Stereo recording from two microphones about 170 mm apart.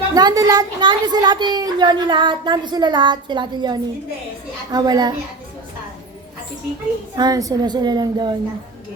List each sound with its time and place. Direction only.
0.1 s a woman's voice: 20° right (ahead or behind)
7.2 s a woman's voice: 20° right (ahead or behind)